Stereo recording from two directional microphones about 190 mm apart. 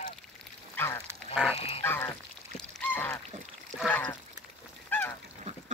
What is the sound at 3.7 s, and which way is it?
Splash, 5° left (ahead or behind).